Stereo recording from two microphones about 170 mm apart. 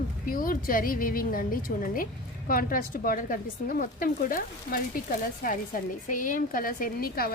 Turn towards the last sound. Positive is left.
turn(degrees=60)  # may be behind; listen again after turning